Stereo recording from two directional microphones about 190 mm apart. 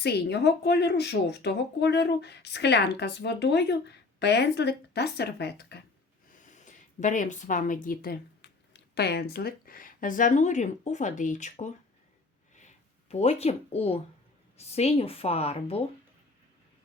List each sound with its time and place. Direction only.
0.0 s a woman's voice: 60° left (ahead or behind)
6.4 s speech: 40° left (ahead or behind)
12.5 s a sound: 35° left (ahead or behind)
14.6 s a woman's voice: 35° left (ahead or behind)